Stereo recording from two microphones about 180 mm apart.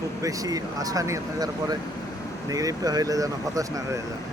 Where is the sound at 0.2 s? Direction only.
20° right (ahead or behind).